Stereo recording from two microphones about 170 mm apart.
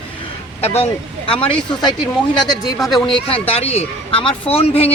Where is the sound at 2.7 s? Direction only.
Centre (ahead or behind).